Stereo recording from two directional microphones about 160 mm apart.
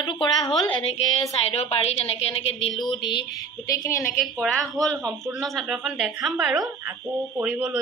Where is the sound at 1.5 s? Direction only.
40° left (ahead or behind).